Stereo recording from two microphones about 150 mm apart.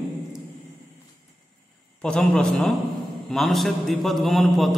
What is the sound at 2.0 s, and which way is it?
A man's voice, 5° left (ahead or behind).